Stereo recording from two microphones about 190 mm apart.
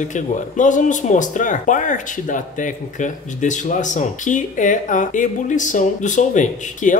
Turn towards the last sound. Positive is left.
turn(degrees=40)  # may be behind; listen again after turning